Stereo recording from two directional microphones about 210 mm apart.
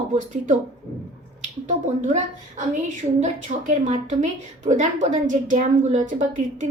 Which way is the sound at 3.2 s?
35° right (ahead or behind).